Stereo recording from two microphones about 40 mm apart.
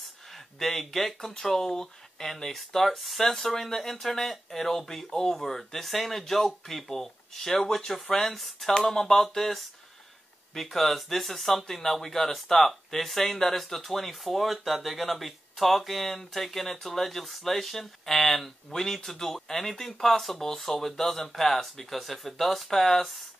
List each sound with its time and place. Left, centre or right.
0.6 s speech: centre
18.7 s speech: centre